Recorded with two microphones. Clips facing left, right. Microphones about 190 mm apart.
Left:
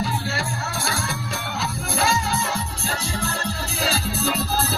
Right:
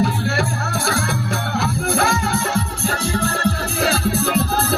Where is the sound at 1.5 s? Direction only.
60° right (ahead or behind).